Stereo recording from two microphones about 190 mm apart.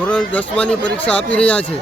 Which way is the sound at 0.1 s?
5° left (ahead or behind).